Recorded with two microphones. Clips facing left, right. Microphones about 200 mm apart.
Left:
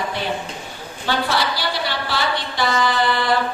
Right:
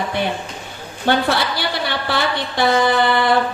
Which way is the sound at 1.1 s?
55° right (ahead or behind).